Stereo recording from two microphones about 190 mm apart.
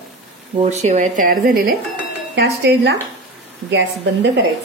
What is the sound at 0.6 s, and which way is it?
Speech, 40° right (ahead or behind).